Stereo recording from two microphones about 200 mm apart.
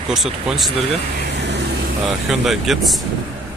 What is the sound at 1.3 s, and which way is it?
Vehicle, 60° right (ahead or behind).